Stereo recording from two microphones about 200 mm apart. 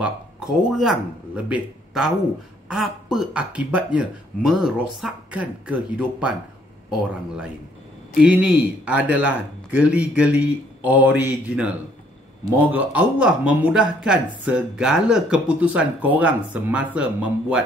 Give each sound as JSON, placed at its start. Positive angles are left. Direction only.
{"t": 0.7, "sound": "speech", "side_deg": 0}
{"t": 8.2, "sound": "speech", "side_deg": -5}